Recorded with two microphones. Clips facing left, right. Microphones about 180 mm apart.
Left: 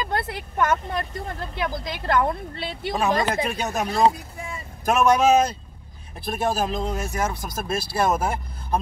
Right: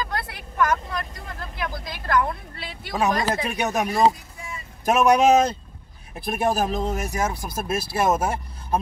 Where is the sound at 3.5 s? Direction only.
20° right (ahead or behind).